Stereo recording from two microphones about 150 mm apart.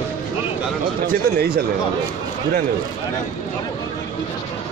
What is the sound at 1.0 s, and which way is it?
Speech, 90° right.